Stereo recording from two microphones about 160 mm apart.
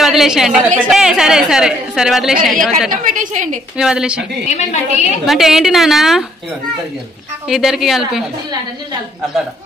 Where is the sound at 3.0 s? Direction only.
55° right (ahead or behind).